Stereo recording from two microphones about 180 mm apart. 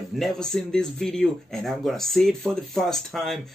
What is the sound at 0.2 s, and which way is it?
Speech, 5° left (ahead or behind).